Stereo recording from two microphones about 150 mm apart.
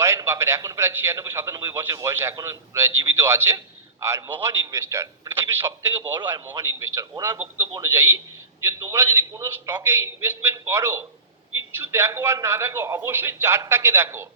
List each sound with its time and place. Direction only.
0.0 s a man's voice: 20° right (ahead or behind)